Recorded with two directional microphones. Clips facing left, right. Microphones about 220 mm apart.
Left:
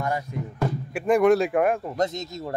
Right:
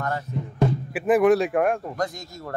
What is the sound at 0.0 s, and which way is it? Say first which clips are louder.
Speech: left 1 dB; 15° left (ahead or behind).